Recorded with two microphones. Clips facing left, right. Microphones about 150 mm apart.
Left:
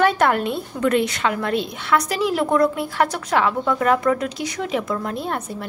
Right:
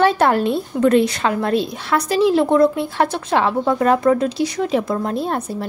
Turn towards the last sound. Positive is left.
turn(degrees=-35)  # may be behind; listen again after turning